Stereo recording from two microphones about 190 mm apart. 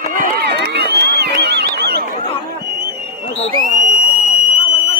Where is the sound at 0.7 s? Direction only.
60° right (ahead or behind).